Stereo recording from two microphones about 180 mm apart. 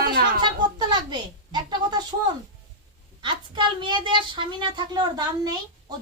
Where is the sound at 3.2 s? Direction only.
25° right (ahead or behind).